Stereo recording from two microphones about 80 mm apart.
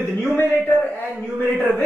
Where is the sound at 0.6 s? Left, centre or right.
Centre.